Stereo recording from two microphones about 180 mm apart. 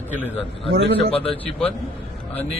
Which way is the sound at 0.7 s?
70° right (ahead or behind).